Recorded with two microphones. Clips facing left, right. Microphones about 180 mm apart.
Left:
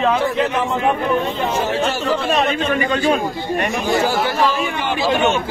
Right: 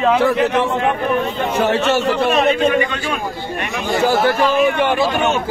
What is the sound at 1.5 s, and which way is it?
Speech, 70° right (ahead or behind).